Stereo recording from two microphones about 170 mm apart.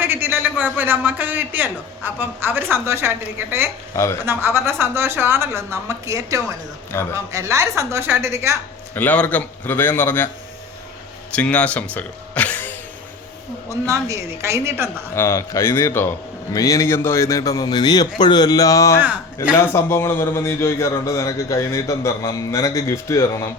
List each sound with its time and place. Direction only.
0.0 s a man's voice: 10° right (ahead or behind)
3.9 s a man's voice: 15° left (ahead or behind)
4.3 s a man's voice: 15° right (ahead or behind)
9.0 s a man's voice: 10° left (ahead or behind)
11.3 s speech: 10° left (ahead or behind)
13.7 s a man's voice: 15° right (ahead or behind)
15.1 s a man's voice: 15° left (ahead or behind)